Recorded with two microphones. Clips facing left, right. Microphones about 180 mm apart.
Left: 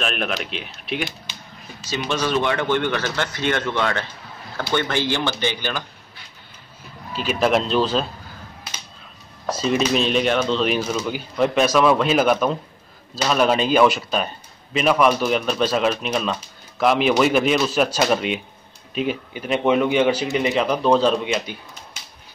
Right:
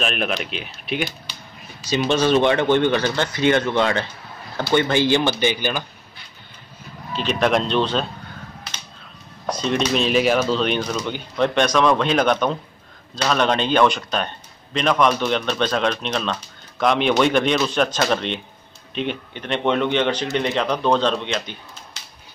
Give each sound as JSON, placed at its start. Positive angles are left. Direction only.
{"t": 0.0, "sound": "speech", "side_deg": 0}
{"t": 2.0, "sound": "speech", "side_deg": -25}
{"t": 7.2, "sound": "speech", "side_deg": 5}
{"t": 9.5, "sound": "speech", "side_deg": 5}